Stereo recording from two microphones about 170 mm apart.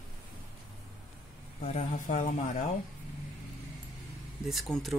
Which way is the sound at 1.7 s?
45° left (ahead or behind).